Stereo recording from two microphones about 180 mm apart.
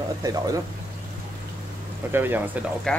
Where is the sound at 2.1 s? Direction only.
10° right (ahead or behind).